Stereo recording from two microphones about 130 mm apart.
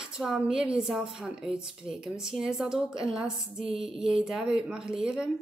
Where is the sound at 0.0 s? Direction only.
5° right (ahead or behind).